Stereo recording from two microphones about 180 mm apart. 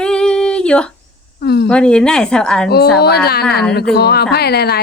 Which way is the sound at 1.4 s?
65° left (ahead or behind).